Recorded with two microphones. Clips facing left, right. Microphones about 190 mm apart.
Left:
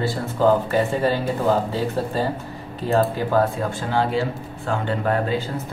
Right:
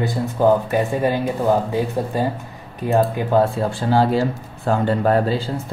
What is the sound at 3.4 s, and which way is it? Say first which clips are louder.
Speech: right 3 dB; 30° right (ahead or behind).